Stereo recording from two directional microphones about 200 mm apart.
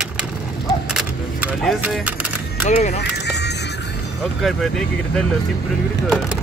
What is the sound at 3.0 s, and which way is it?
Music, 55° left (ahead or behind).